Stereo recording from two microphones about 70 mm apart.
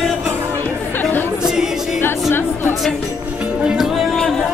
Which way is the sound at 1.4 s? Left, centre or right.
Centre.